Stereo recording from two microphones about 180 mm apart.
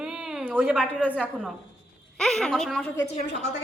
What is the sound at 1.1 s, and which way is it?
A woman's voice, 10° left (ahead or behind).